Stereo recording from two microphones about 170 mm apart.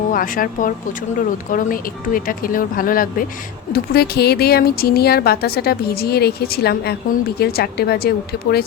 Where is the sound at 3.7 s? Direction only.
65° left (ahead or behind).